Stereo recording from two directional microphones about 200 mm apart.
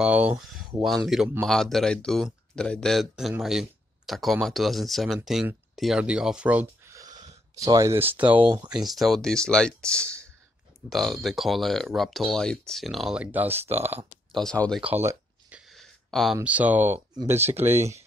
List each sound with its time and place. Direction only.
0.0 s speech: 5° right (ahead or behind)
14.3 s speech: 5° left (ahead or behind)
14.9 s a sound: 10° right (ahead or behind)
15.7 s a sound: centre (ahead or behind)
16.3 s speech: 5° right (ahead or behind)
17.1 s speech: 20° right (ahead or behind)
17.7 s speech: 35° right (ahead or behind)